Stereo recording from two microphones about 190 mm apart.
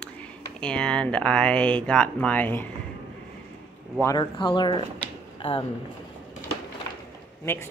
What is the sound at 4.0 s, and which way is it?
Speech, 20° left (ahead or behind).